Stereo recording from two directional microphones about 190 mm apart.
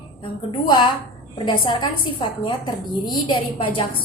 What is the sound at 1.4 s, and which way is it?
A woman's voice, 25° left (ahead or behind).